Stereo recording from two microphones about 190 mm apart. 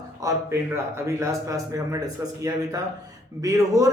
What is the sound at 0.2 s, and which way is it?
A man's voice, 15° right (ahead or behind).